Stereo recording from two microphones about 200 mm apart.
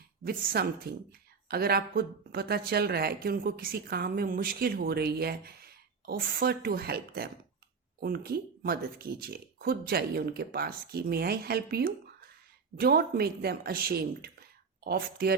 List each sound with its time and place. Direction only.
0.3 s speech: 50° right (ahead or behind)